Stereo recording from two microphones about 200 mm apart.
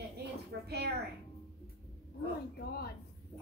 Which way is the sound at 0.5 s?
70° right (ahead or behind).